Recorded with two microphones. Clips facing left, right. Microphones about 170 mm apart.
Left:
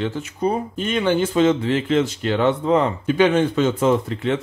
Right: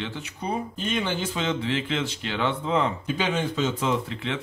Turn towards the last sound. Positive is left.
turn(degrees=45)  # may be behind; listen again after turning